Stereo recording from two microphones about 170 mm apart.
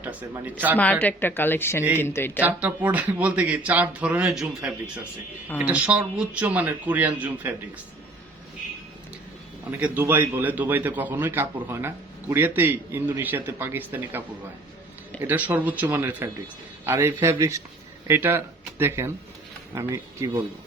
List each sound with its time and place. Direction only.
0.0 s a man's voice: 10° right (ahead or behind)
0.8 s a woman's voice: 10° left (ahead or behind)
2.4 s a man's voice: 10° right (ahead or behind)
9.8 s a man's voice: 10° right (ahead or behind)